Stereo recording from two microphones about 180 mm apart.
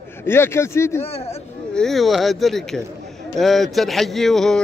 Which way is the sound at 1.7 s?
5° left (ahead or behind).